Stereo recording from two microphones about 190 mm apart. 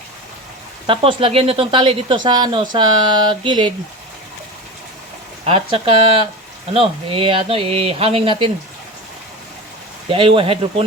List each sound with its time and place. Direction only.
0.9 s speech: 30° right (ahead or behind)
5.5 s speech: 30° right (ahead or behind)
10.1 s speech: 30° right (ahead or behind)